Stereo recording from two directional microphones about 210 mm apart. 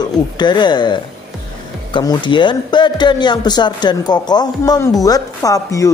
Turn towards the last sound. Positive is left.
turn(degrees=15)  # may be behind; listen again after turning